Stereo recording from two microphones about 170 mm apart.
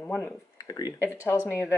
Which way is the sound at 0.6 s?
25° left (ahead or behind).